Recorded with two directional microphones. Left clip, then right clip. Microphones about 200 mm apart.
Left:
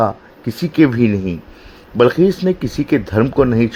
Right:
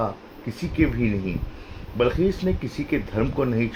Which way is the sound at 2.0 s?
50° left (ahead or behind).